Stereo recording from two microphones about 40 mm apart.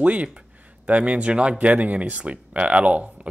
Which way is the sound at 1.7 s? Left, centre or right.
Right.